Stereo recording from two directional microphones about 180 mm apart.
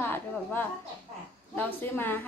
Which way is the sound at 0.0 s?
10° left (ahead or behind).